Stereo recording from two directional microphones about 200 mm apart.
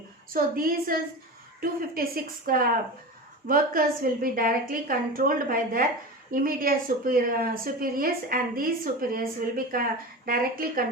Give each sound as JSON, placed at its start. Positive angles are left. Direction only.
{"t": 0.3, "sound": "a woman's voice", "side_deg": -45}